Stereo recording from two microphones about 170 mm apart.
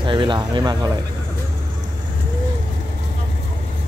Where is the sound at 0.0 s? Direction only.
30° right (ahead or behind).